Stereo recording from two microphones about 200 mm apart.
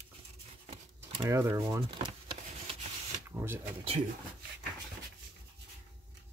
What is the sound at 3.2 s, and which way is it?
Speech, 10° right (ahead or behind).